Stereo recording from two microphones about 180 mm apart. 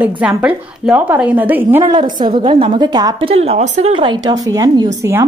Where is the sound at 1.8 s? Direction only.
25° right (ahead or behind).